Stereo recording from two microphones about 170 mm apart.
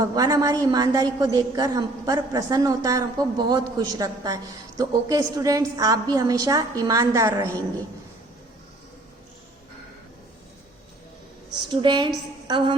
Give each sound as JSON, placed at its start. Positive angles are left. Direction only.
{"t": 0.0, "sound": "a woman's voice", "side_deg": -20}
{"t": 11.7, "sound": "a woman's voice", "side_deg": -25}